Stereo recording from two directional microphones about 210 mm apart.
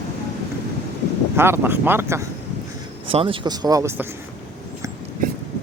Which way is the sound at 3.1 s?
25° right (ahead or behind).